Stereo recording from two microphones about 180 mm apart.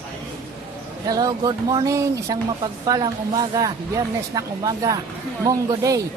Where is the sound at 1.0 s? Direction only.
20° right (ahead or behind).